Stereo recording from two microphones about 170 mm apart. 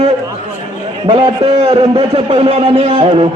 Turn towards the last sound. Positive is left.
turn(degrees=-35)  # may be behind; listen again after turning